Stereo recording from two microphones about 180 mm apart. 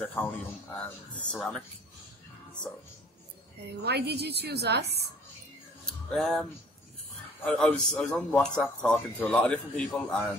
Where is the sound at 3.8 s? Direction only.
65° right (ahead or behind).